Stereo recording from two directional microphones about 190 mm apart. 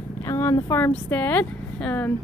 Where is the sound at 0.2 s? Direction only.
15° left (ahead or behind).